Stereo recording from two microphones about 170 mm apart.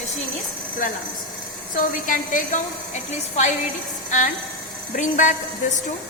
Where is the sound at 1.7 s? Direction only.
50° left (ahead or behind).